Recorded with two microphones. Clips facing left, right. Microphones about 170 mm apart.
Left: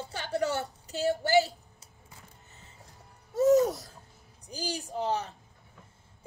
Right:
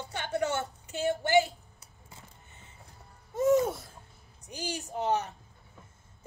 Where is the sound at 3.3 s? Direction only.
40° left (ahead or behind).